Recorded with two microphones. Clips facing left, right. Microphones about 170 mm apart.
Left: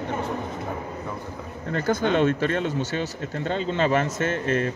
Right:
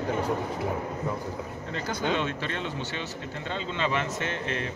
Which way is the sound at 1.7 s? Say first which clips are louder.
Left 7 dB; 50° left (ahead or behind).